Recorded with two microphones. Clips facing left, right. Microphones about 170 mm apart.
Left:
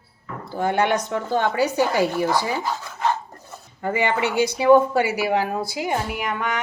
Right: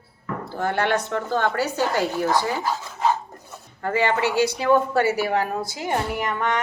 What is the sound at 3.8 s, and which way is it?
Speech, 15° left (ahead or behind).